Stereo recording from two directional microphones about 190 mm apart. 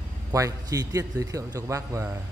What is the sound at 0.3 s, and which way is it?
A man's voice, 15° right (ahead or behind).